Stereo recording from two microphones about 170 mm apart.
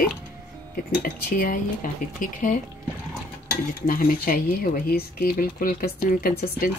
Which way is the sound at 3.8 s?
55° left (ahead or behind).